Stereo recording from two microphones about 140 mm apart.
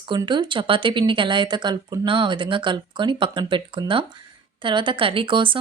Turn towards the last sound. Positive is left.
turn(degrees=-35)  # may be behind; listen again after turning